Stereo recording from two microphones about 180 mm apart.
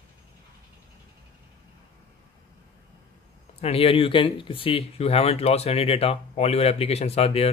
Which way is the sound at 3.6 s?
30° left (ahead or behind).